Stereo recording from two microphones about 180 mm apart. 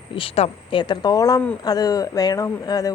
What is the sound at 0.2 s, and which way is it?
A woman's voice, 35° left (ahead or behind).